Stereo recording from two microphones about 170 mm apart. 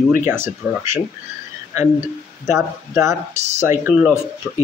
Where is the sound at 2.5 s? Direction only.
15° right (ahead or behind).